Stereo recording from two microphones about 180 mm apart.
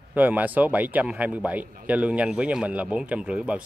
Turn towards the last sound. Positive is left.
turn(degrees=-5)  # may be behind; listen again after turning